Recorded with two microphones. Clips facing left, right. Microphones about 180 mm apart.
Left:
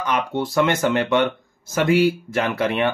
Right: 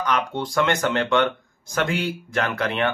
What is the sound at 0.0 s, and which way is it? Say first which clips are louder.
Speech: left 2 dB; 10° left (ahead or behind).